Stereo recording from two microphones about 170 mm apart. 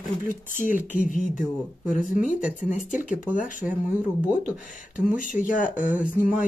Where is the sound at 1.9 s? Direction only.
50° left (ahead or behind).